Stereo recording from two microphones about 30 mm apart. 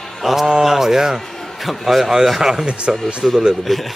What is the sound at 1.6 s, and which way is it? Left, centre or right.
Speech, centre.